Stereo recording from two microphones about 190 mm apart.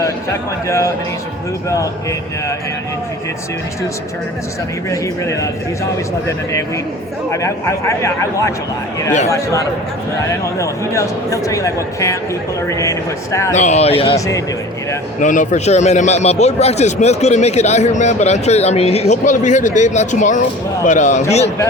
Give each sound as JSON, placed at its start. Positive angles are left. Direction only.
{"t": 1.7, "sound": "speech", "side_deg": 15}
{"t": 4.9, "sound": "speech", "side_deg": 15}
{"t": 13.6, "sound": "a man's voice", "side_deg": 35}
{"t": 15.2, "sound": "a man's voice", "side_deg": 40}